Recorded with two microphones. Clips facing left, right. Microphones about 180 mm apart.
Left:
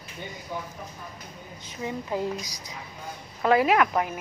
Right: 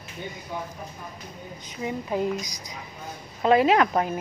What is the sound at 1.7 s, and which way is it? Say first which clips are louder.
A woman's voice: right 2 dB; 20° right (ahead or behind).